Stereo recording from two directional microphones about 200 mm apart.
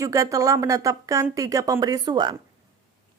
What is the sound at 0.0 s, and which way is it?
Speech, 15° right (ahead or behind).